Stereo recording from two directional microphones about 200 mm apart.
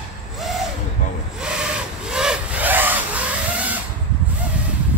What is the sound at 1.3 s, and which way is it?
Sawing, 5° right (ahead or behind).